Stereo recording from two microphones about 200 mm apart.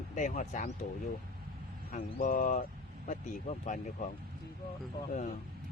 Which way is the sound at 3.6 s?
40° left (ahead or behind).